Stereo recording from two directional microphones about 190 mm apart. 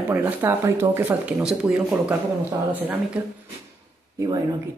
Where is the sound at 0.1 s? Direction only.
15° right (ahead or behind).